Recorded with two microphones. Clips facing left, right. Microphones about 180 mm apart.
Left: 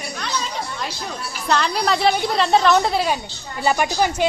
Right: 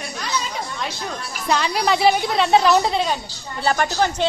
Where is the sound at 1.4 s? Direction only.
5° right (ahead or behind).